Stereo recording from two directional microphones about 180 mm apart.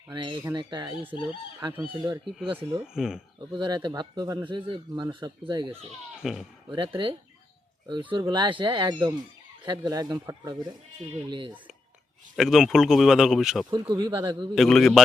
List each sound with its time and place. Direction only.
0.1 s speech: 25° right (ahead or behind)
1.7 s speech: 10° right (ahead or behind)
3.5 s speech: 25° right (ahead or behind)
6.2 s speech: centre (ahead or behind)
6.7 s speech: 30° right (ahead or behind)
12.4 s speech: centre (ahead or behind)
13.7 s speech: 25° right (ahead or behind)
14.5 s speech: centre (ahead or behind)